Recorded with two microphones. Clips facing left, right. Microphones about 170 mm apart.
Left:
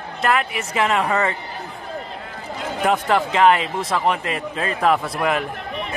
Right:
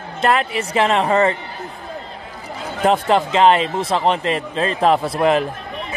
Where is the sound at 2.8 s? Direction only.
25° right (ahead or behind).